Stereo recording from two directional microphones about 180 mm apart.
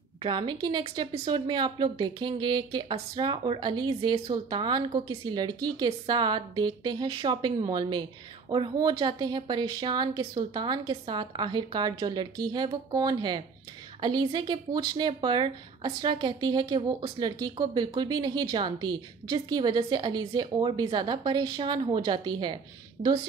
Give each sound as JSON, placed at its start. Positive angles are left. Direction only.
{"t": 0.2, "sound": "speech", "side_deg": -25}
{"t": 23.0, "sound": "a woman's voice", "side_deg": -60}